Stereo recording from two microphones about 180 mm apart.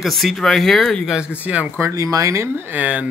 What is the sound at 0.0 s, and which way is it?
Speech, centre (ahead or behind).